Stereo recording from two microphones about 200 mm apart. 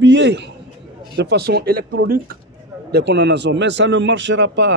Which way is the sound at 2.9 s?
60° right (ahead or behind).